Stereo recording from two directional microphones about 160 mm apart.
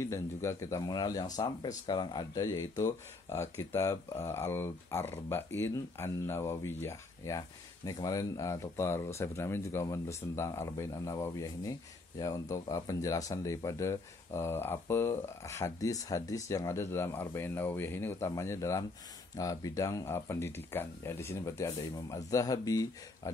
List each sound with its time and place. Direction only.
0.0 s speech: 15° left (ahead or behind)